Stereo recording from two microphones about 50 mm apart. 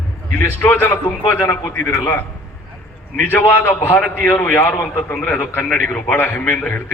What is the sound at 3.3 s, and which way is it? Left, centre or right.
Speech, left.